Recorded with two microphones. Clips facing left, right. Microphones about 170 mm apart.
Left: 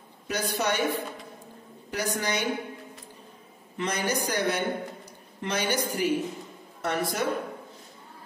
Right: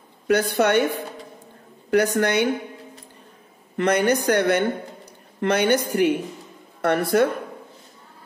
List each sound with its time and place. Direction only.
0.3 s a woman's voice: 60° right (ahead or behind)
3.7 s a woman's voice: 60° right (ahead or behind)